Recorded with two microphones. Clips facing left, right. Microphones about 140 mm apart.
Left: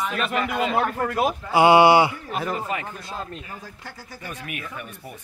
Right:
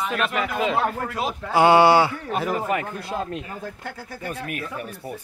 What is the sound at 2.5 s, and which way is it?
Speech, 55° right (ahead or behind).